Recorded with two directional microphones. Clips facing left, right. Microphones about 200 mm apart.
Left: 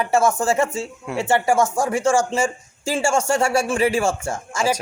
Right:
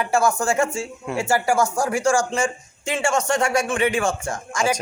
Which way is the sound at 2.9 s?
30° left (ahead or behind).